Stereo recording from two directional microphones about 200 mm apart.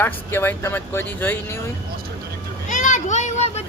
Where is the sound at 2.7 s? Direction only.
40° left (ahead or behind).